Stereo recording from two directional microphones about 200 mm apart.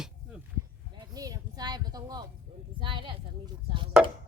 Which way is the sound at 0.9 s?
20° right (ahead or behind).